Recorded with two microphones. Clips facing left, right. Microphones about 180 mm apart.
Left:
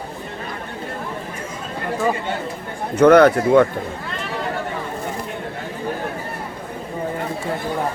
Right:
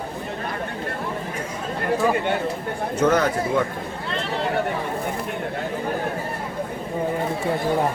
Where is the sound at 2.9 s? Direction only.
65° left (ahead or behind).